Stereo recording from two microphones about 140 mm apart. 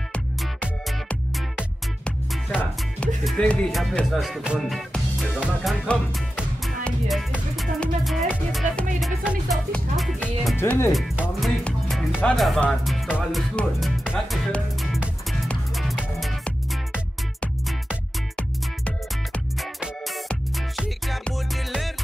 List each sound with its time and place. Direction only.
3.3 s speech: 5° left (ahead or behind)
10.6 s speech: 15° left (ahead or behind)
10.9 s speech: centre (ahead or behind)
12.4 s music: 5° left (ahead or behind)
18.9 s music: 10° left (ahead or behind)
21.2 s music: centre (ahead or behind)